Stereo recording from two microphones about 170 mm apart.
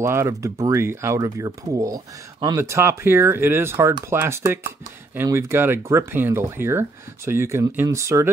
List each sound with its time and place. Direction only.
0.0 s speech: 15° right (ahead or behind)